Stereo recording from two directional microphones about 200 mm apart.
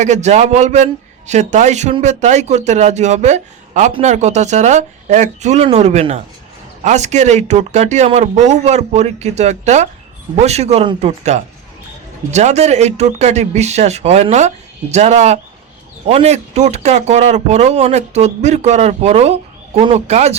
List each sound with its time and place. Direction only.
0.0 s speech: 35° right (ahead or behind)